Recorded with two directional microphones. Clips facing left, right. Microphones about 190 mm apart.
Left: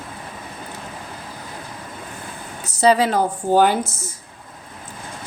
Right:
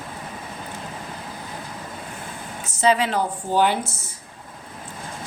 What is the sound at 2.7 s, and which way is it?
A woman's voice, 35° left (ahead or behind).